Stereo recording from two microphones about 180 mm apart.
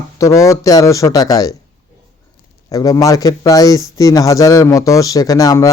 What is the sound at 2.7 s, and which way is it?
Speech, 20° left (ahead or behind).